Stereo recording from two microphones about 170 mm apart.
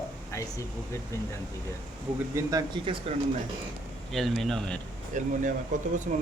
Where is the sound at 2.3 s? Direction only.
20° right (ahead or behind).